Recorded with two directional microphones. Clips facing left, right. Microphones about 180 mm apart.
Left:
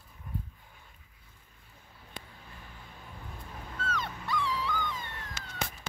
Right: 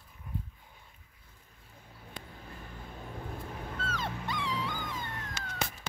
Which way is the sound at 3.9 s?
25° right (ahead or behind).